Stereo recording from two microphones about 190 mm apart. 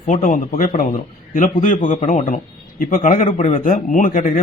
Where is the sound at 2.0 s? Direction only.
40° left (ahead or behind).